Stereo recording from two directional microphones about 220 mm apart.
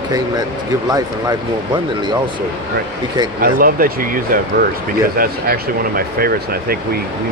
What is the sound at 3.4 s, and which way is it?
Speech, 40° right (ahead or behind).